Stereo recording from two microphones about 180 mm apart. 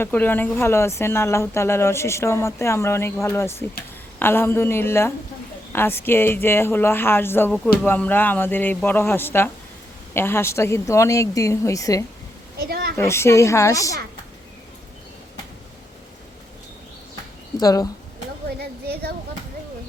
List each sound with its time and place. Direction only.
0.0 s speech: 10° left (ahead or behind)
12.5 s a sound: 60° right (ahead or behind)
13.0 s speech: 15° left (ahead or behind)
17.6 s speech: 20° left (ahead or behind)
18.6 s speech: 60° right (ahead or behind)